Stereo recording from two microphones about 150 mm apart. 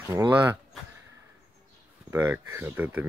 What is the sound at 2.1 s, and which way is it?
Speech, 15° right (ahead or behind).